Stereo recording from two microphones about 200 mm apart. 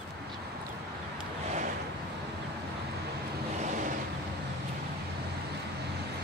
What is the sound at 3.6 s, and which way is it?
Vehicle, 40° right (ahead or behind).